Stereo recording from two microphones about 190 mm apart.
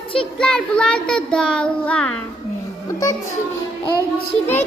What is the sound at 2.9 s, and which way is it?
Speech, 15° left (ahead or behind).